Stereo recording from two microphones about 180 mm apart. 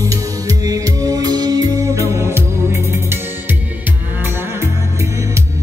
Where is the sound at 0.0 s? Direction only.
20° right (ahead or behind).